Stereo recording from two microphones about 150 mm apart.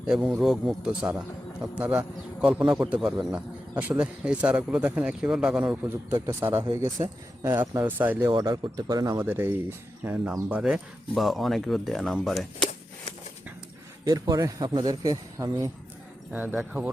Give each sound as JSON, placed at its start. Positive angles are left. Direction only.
{"t": 0.0, "sound": "a man's voice", "side_deg": -5}
{"t": 8.3, "sound": "speech", "side_deg": -30}
{"t": 14.0, "sound": "a man's voice", "side_deg": -25}
{"t": 16.3, "sound": "a man's voice", "side_deg": -10}